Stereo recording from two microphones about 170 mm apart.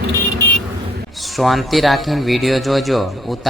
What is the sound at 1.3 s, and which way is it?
Speech, centre (ahead or behind).